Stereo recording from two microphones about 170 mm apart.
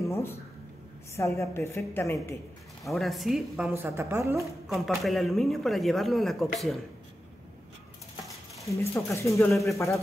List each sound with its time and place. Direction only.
0.1 s a sound: 15° left (ahead or behind)
1.1 s a woman's voice: 15° left (ahead or behind)
2.8 s speech: centre (ahead or behind); by 4.5 s 15° right (ahead or behind)
4.6 s speech: centre (ahead or behind)
8.6 s a woman's voice: 15° left (ahead or behind)
9.5 s speech: centre (ahead or behind)